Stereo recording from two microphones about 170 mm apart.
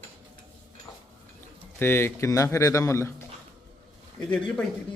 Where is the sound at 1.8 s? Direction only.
15° left (ahead or behind).